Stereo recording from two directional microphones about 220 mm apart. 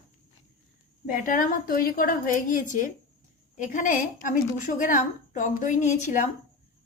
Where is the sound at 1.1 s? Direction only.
40° left (ahead or behind).